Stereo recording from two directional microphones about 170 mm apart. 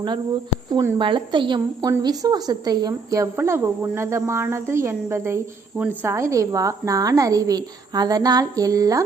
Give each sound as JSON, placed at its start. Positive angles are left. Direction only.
{"t": 0.7, "sound": "speech", "side_deg": -15}
{"t": 0.9, "sound": "a woman's voice", "side_deg": -30}